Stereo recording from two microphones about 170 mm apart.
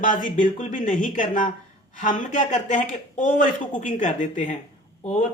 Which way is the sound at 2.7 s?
50° left (ahead or behind).